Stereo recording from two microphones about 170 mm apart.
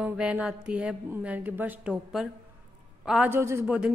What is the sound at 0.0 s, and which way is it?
Speech, 5° right (ahead or behind).